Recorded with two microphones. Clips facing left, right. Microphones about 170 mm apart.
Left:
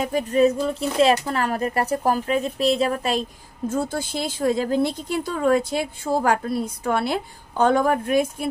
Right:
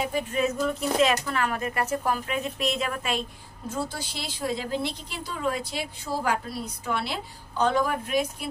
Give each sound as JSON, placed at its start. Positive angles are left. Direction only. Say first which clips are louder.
{"t": 0.0, "sound": "speech", "louder": "left 8 dB", "side_deg": 40}
{"t": 3.7, "sound": "speech", "louder": "left 7 dB", "side_deg": 50}